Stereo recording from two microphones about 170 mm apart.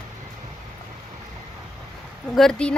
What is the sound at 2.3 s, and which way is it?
Speech, 5° left (ahead or behind).